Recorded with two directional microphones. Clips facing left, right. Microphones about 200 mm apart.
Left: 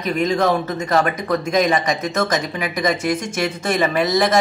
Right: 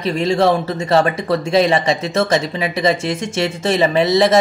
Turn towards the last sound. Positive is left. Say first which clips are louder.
# right 4 dB
turn(degrees=-25)  # may be behind; listen again after turning